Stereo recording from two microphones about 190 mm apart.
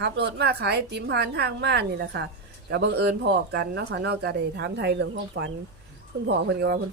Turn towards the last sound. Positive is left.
turn(degrees=-60)  # may be behind; listen again after turning